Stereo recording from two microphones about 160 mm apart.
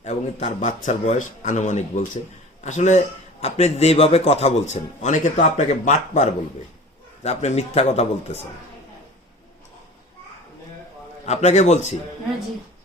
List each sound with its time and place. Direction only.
0.0 s a man's voice: 45° left (ahead or behind)
11.3 s a man's voice: 45° left (ahead or behind)